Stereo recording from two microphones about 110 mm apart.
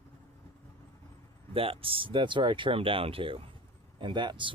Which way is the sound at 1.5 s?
55° right (ahead or behind).